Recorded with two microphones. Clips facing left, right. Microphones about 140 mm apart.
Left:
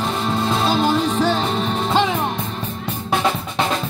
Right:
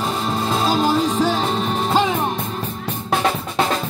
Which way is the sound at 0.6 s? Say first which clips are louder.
Right 1 dB; 5° right (ahead or behind).